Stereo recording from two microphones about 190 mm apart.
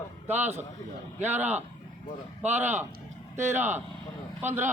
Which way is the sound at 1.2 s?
10° right (ahead or behind).